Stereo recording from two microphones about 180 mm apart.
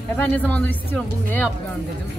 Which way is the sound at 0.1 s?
10° left (ahead or behind).